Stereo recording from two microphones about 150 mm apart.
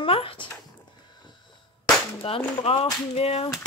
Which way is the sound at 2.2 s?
40° left (ahead or behind).